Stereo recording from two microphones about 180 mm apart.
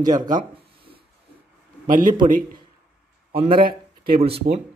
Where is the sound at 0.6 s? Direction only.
30° right (ahead or behind).